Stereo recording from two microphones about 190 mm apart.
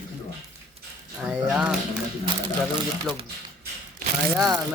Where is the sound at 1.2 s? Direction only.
5° right (ahead or behind).